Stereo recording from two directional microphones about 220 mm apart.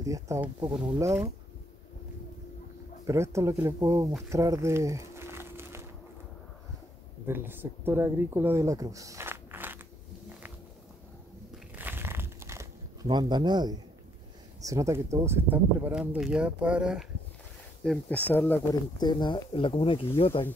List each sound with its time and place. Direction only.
0.0 s speech: 15° right (ahead or behind)
3.1 s speech: 15° right (ahead or behind)
4.3 s crumpling: 15° right (ahead or behind)
7.2 s speech: 10° right (ahead or behind)
11.7 s crumpling: 10° right (ahead or behind)
14.6 s speech: 15° right (ahead or behind); by 18.8 s 10° left (ahead or behind)
18.9 s speech: 20° left (ahead or behind)